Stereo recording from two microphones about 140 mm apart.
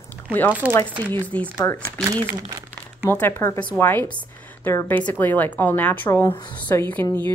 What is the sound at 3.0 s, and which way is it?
A woman's voice, 15° left (ahead or behind).